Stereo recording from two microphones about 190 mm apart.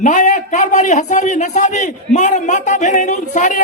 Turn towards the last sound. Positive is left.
turn(degrees=40)  # may be behind; listen again after turning